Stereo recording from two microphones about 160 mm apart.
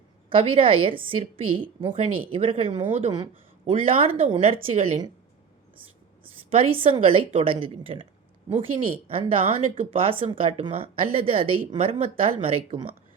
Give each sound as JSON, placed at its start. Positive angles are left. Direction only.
{"t": 0.3, "sound": "a woman's voice", "side_deg": -35}
{"t": 6.3, "sound": "a woman's voice", "side_deg": -35}